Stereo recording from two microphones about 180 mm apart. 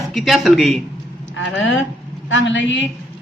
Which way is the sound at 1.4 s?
90° left.